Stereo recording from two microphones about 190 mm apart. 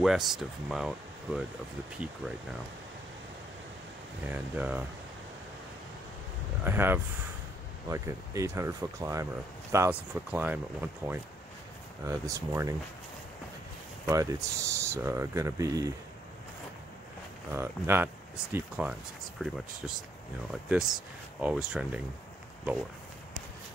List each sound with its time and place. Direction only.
0.0 s speech: centre (ahead or behind)
4.3 s speech: 10° right (ahead or behind)
6.6 s speech: 10° right (ahead or behind)
14.0 s speech: 15° right (ahead or behind)
17.5 s speech: 15° right (ahead or behind)